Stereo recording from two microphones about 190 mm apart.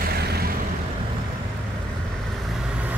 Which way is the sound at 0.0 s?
55° right (ahead or behind).